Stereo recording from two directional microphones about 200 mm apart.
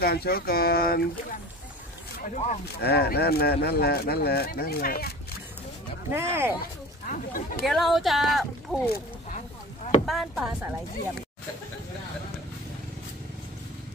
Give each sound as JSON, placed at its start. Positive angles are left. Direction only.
{"t": 0.0, "sound": "speech", "side_deg": 50}
{"t": 2.2, "sound": "speech", "side_deg": 35}
{"t": 2.8, "sound": "speech", "side_deg": 55}
{"t": 6.1, "sound": "speech", "side_deg": -10}
{"t": 6.6, "sound": "speech", "side_deg": 45}
{"t": 7.6, "sound": "speech", "side_deg": 0}
{"t": 10.0, "sound": "speech", "side_deg": 0}